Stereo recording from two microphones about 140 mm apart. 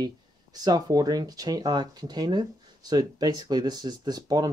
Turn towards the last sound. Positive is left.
turn(degrees=-30)  # may be behind; listen again after turning